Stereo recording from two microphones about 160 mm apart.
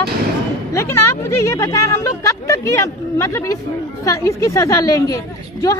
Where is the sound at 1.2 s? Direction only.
20° left (ahead or behind).